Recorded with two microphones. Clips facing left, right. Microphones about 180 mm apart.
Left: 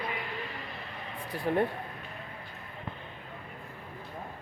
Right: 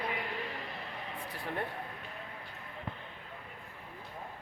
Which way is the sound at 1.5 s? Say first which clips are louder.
Left 10 dB; 45° left (ahead or behind).